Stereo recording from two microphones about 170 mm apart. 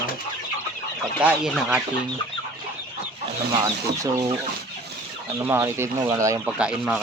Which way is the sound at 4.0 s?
20° right (ahead or behind).